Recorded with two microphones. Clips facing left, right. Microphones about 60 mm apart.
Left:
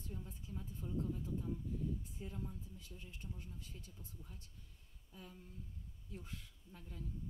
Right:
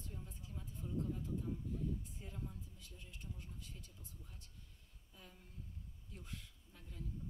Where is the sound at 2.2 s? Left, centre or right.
Left.